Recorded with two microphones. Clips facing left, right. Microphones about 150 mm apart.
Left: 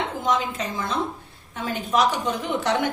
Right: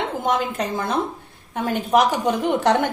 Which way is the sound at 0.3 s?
60° right (ahead or behind).